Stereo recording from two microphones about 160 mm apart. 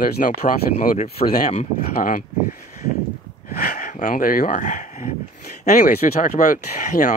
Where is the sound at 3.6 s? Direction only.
70° left (ahead or behind).